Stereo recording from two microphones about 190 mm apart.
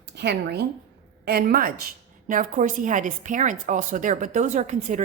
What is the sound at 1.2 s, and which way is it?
A woman's voice, 50° right (ahead or behind).